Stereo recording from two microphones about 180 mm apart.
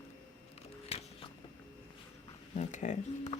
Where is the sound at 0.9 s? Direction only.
35° left (ahead or behind).